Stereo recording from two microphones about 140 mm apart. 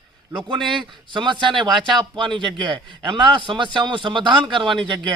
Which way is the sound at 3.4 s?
35° right (ahead or behind).